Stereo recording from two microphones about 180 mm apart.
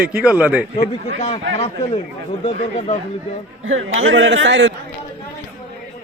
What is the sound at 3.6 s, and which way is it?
A man's voice, 90° right.